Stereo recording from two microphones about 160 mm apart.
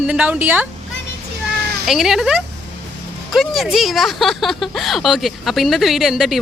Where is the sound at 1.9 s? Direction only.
Centre (ahead or behind).